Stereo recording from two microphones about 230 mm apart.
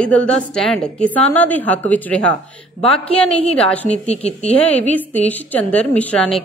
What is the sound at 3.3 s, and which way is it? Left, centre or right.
Speech, left.